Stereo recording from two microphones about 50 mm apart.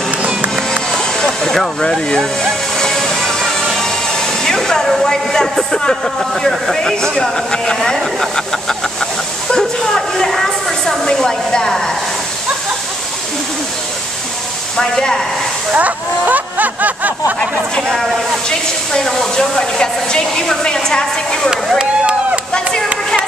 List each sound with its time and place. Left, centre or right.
0.2 s music: right
0.9 s a sound: centre
1.8 s speech: centre
2.8 s music: centre
3.7 s speech: centre
14.8 s speech: centre
15.7 s speech: right
18.5 s speech: centre
21.7 s a sound: right